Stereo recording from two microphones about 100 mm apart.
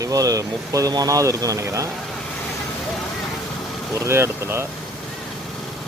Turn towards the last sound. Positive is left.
turn(degrees=-25)  # may be behind; listen again after turning